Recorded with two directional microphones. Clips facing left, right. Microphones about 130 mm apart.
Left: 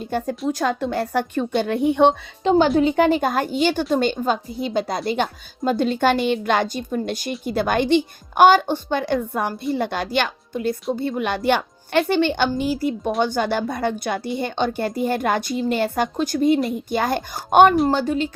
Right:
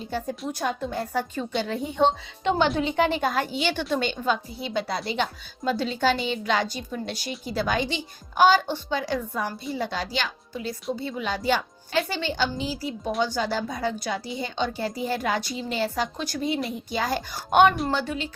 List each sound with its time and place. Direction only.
0.3 s a woman's voice: 85° left; by 2.1 s 65° left (ahead or behind)
2.4 s a woman's voice: 35° left (ahead or behind)